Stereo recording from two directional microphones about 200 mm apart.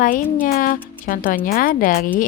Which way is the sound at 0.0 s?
45° left (ahead or behind).